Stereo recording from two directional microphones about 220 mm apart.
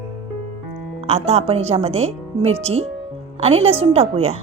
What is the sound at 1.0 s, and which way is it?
A woman's voice, 30° right (ahead or behind).